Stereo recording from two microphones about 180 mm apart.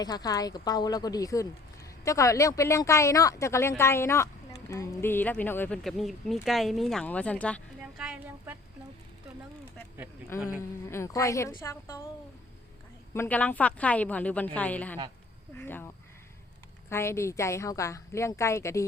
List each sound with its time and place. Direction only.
0.0 s speech: 20° left (ahead or behind)
8.0 s speech: 5° right (ahead or behind)
10.6 s speech: 15° left (ahead or behind)
13.1 s speech: 10° left (ahead or behind)
16.9 s speech: 15° left (ahead or behind)